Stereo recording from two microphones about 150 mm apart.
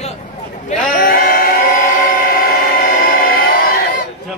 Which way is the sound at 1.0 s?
75° left (ahead or behind).